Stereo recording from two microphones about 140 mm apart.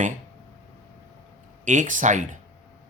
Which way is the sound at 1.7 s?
65° right (ahead or behind).